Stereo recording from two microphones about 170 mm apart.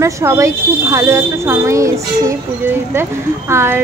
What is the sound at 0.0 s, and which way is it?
Speech, 15° right (ahead or behind).